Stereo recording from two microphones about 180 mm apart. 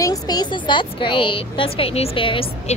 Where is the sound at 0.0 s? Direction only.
20° left (ahead or behind).